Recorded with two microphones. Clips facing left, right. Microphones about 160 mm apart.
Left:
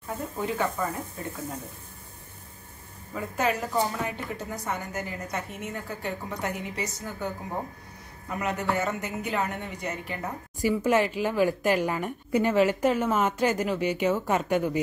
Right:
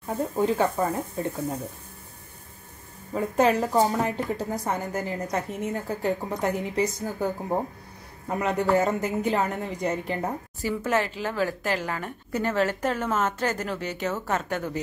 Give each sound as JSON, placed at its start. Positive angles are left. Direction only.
{"t": 0.4, "sound": "a woman's voice", "side_deg": -35}
{"t": 3.2, "sound": "a woman's voice", "side_deg": -30}
{"t": 10.6, "sound": "speech", "side_deg": 10}